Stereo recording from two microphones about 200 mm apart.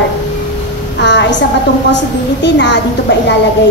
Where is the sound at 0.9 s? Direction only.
60° left (ahead or behind).